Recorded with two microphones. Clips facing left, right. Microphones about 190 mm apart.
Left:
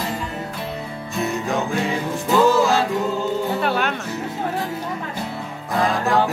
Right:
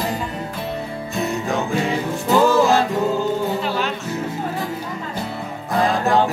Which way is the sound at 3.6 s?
60° left (ahead or behind).